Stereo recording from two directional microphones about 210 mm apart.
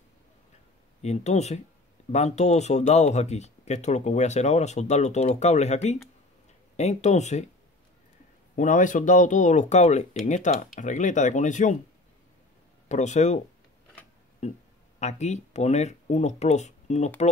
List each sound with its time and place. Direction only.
1.0 s speech: 30° left (ahead or behind)
8.5 s speech: 35° left (ahead or behind)
12.8 s speech: 35° left (ahead or behind)
14.4 s speech: 35° left (ahead or behind)